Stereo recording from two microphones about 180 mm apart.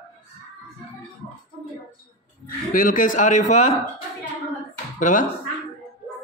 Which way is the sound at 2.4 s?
50° left (ahead or behind).